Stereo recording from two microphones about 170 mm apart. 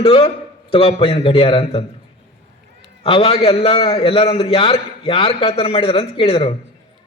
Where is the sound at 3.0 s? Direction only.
35° left (ahead or behind).